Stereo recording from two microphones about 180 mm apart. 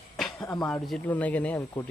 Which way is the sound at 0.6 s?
5° left (ahead or behind).